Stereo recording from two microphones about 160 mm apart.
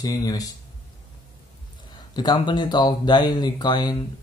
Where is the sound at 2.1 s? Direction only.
25° left (ahead or behind).